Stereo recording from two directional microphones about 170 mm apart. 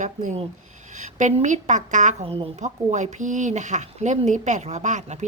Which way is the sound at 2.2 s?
35° right (ahead or behind).